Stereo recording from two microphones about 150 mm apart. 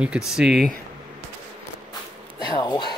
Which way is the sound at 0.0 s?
5° right (ahead or behind).